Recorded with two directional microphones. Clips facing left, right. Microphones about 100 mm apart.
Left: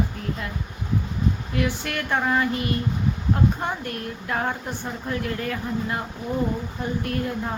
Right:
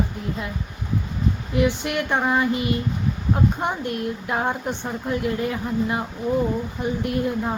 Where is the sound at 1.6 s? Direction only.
20° right (ahead or behind).